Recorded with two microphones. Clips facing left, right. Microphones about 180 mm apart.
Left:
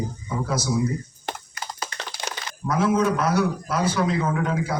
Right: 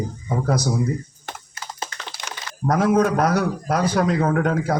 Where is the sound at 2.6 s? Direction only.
60° right (ahead or behind).